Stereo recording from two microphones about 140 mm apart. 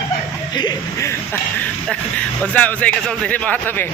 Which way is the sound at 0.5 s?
30° left (ahead or behind).